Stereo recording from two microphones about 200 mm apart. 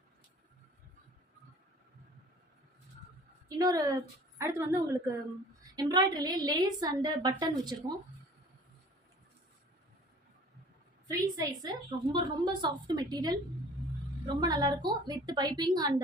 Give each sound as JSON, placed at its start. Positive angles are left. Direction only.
{"t": 3.6, "sound": "a woman's voice", "side_deg": -15}
{"t": 11.1, "sound": "a woman's voice", "side_deg": -20}
{"t": 14.4, "sound": "a woman's voice", "side_deg": -20}